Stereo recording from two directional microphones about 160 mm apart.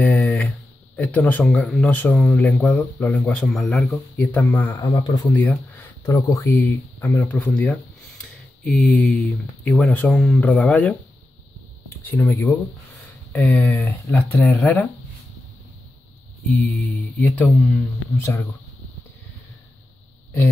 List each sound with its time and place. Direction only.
0.0 s a sound: 5° left (ahead or behind)
0.9 s speech: 10° left (ahead or behind); by 5.3 s 25° left (ahead or behind)
5.3 s speech: 10° left (ahead or behind)
6.0 s speech: 20° left (ahead or behind)
17.2 s speech: 10° left (ahead or behind)
18.1 s speech: 15° left (ahead or behind)